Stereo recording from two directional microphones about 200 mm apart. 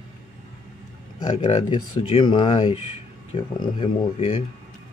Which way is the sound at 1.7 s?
25° left (ahead or behind).